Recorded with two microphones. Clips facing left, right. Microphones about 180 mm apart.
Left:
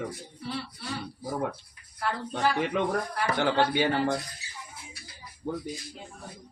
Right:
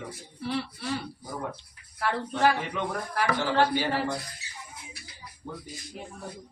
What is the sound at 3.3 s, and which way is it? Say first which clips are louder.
Speech: left 2 dB; 60° left (ahead or behind).